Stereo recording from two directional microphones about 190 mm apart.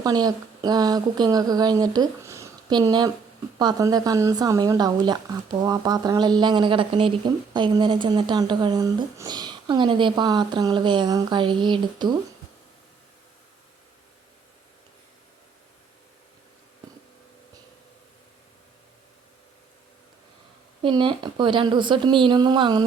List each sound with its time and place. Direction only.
0.0 s a woman's voice: 20° right (ahead or behind)
20.8 s a woman's voice: 25° right (ahead or behind)